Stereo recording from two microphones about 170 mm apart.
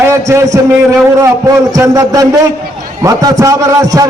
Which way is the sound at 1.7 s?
20° right (ahead or behind).